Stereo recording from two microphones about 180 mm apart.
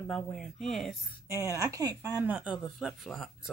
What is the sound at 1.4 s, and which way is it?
Speech, 15° right (ahead or behind).